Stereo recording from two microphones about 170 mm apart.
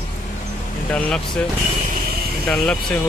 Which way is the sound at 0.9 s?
5° left (ahead or behind).